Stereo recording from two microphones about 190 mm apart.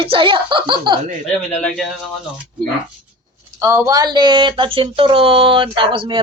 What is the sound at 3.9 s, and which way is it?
Speech, 20° right (ahead or behind).